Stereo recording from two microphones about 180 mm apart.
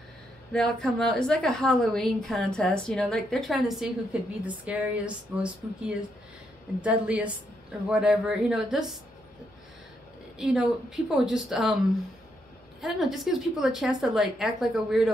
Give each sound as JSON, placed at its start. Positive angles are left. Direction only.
{"t": 0.5, "sound": "a woman's voice", "side_deg": 0}
{"t": 10.3, "sound": "a woman's voice", "side_deg": 0}
{"t": 12.8, "sound": "a woman's voice", "side_deg": 0}